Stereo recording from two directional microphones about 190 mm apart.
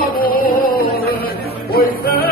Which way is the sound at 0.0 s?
50° left (ahead or behind).